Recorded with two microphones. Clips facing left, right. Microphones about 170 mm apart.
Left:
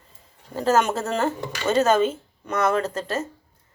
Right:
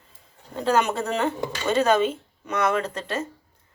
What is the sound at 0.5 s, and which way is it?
Speech, centre (ahead or behind).